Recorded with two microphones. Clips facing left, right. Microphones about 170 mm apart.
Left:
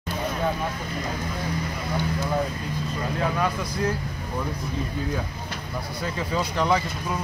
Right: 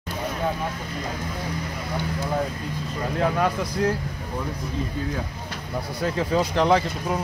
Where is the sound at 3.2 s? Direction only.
50° right (ahead or behind).